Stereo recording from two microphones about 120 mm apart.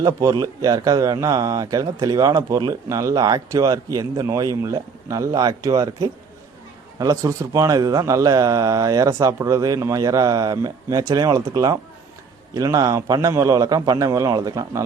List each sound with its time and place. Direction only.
0.0 s speech: 30° right (ahead or behind)